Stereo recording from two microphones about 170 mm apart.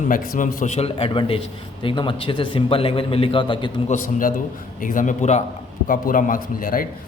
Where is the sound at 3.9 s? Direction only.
50° left (ahead or behind).